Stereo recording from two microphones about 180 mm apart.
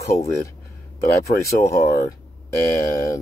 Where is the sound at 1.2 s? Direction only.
15° left (ahead or behind).